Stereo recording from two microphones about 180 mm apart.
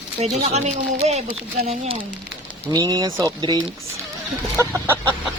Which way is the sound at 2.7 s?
20° right (ahead or behind).